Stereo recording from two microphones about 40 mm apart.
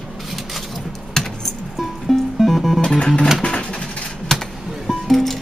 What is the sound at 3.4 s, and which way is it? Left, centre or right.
Guitar, left.